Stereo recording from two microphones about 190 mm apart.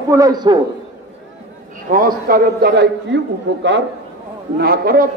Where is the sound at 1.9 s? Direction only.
50° right (ahead or behind).